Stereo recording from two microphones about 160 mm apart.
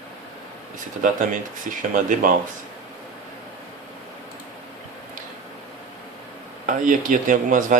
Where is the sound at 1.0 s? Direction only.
55° right (ahead or behind).